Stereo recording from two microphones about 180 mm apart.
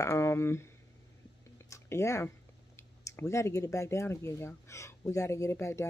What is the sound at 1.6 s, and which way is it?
Speech, 15° left (ahead or behind).